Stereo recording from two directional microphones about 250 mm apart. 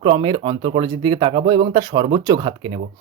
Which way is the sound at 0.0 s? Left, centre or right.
Centre.